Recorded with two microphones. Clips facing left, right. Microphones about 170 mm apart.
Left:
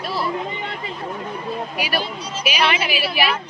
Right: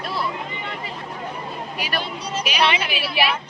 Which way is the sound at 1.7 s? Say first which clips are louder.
Left 3 dB; 10° left (ahead or behind).